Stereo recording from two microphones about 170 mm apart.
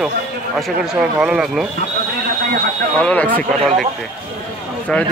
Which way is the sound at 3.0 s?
10° left (ahead or behind).